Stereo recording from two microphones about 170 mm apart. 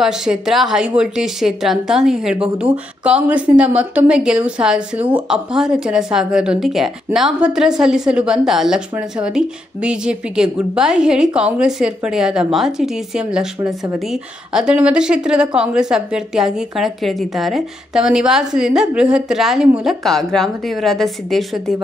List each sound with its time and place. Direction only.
0.0 s a woman's voice: 5° right (ahead or behind)